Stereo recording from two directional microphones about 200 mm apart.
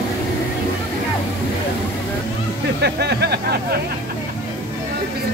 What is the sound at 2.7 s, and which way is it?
Speech, 55° right (ahead or behind).